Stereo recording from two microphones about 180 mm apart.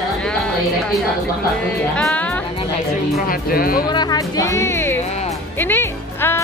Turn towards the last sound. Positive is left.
turn(degrees=15)  # may be behind; listen again after turning